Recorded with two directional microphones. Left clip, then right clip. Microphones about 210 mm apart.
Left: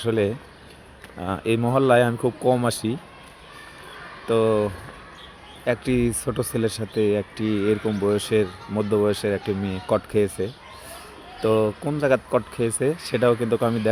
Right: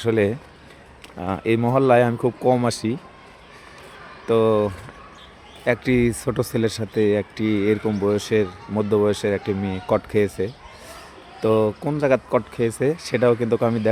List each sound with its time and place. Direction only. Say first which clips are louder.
0.0 s speech: right 3 dB; 20° right (ahead or behind)
4.3 s speech: right 2 dB; 15° right (ahead or behind)